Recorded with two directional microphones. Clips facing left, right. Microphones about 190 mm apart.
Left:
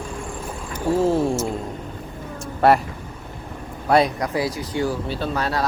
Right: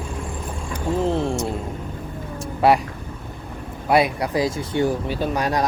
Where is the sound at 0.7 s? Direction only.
10° left (ahead or behind).